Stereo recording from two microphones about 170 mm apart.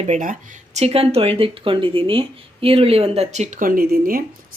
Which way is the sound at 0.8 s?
35° right (ahead or behind).